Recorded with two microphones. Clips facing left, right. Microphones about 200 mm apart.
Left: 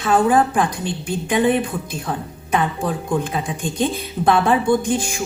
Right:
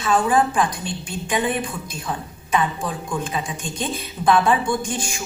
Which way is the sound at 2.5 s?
60° left (ahead or behind).